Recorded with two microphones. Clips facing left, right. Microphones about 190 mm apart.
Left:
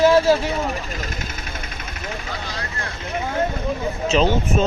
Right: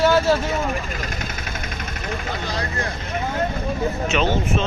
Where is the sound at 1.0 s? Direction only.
50° right (ahead or behind).